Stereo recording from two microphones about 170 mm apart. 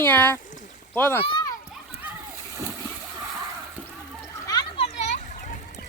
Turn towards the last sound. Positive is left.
turn(degrees=45)  # may be behind; listen again after turning